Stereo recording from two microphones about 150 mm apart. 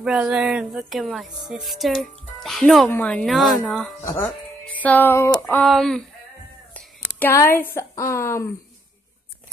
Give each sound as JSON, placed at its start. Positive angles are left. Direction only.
{"t": 0.0, "sound": "speech", "side_deg": -5}
{"t": 4.8, "sound": "speech", "side_deg": 10}
{"t": 5.6, "sound": "speech", "side_deg": 5}
{"t": 7.2, "sound": "a woman's voice", "side_deg": 15}